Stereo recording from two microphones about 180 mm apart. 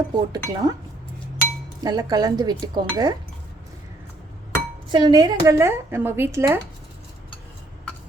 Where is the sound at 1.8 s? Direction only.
20° right (ahead or behind).